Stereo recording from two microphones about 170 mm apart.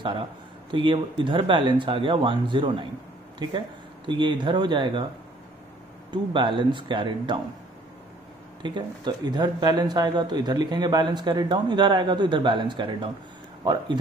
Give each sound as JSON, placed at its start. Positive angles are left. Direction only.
{"t": 0.7, "sound": "speech", "side_deg": -30}
{"t": 6.1, "sound": "speech", "side_deg": -30}
{"t": 8.6, "sound": "speech", "side_deg": -25}